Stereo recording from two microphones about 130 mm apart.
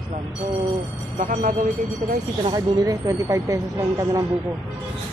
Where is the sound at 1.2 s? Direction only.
90° right.